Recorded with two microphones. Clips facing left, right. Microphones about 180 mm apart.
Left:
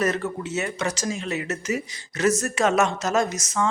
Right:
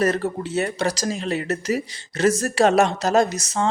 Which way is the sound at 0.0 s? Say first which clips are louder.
Right 3 dB; 35° right (ahead or behind).